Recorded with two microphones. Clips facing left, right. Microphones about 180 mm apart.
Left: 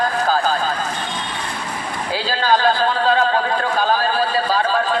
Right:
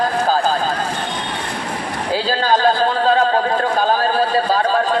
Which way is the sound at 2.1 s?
40° right (ahead or behind).